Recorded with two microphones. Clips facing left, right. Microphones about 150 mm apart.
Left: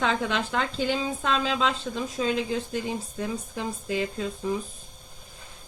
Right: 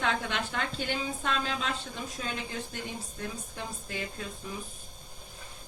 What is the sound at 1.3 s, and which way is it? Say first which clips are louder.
A woman's voice: left 7 dB; 90° left.